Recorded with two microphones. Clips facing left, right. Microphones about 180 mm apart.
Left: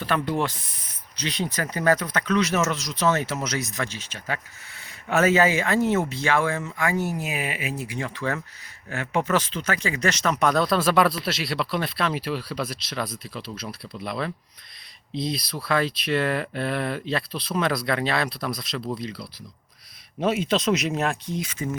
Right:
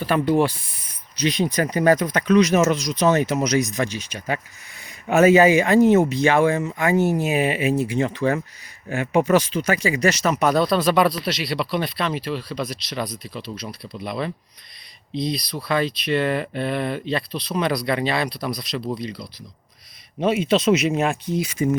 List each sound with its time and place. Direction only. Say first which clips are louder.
0.0 s speech: right 6 dB; 10° right (ahead or behind)